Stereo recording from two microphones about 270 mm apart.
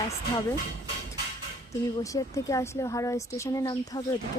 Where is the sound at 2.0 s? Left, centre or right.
Centre.